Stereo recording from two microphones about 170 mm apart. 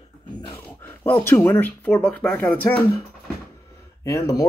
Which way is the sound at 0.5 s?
10° left (ahead or behind).